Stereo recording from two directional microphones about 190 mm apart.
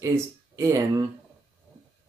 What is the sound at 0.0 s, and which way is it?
Speech, 15° right (ahead or behind).